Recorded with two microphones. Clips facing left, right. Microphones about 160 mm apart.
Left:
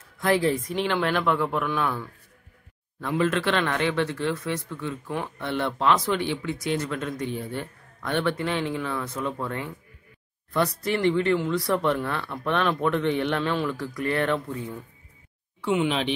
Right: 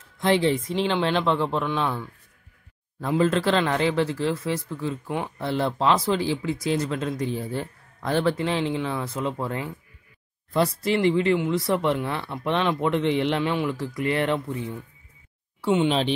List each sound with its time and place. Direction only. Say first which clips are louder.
0.2 s speech: right 1 dB; 25° right (ahead or behind)
3.1 s speech: right 3 dB; 30° right (ahead or behind)
15.6 s speech: right 3 dB; 30° right (ahead or behind)